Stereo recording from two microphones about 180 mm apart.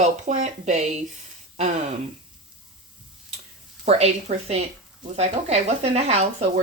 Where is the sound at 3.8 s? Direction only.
35° right (ahead or behind).